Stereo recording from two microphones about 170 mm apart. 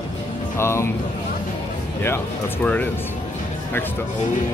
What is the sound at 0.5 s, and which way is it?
Speech, 15° left (ahead or behind).